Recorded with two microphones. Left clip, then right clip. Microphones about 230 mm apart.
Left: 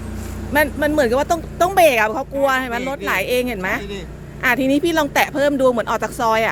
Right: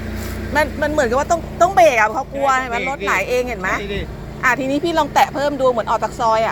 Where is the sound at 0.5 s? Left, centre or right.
Left.